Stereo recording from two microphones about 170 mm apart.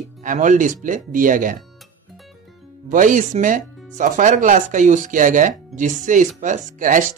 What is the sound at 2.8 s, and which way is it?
Speech, 50° right (ahead or behind).